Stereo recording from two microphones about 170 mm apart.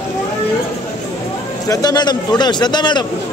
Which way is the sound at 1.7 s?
25° left (ahead or behind).